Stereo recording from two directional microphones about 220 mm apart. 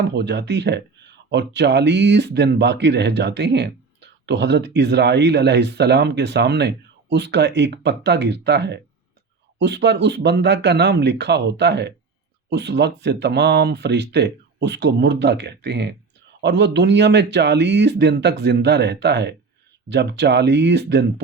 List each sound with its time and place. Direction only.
0.0 s speech: 50° right (ahead or behind)